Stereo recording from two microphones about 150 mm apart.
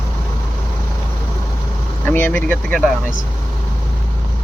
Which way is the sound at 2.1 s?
10° left (ahead or behind).